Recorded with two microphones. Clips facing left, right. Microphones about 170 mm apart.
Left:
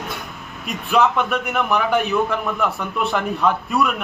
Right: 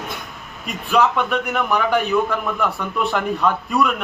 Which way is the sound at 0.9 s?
5° left (ahead or behind).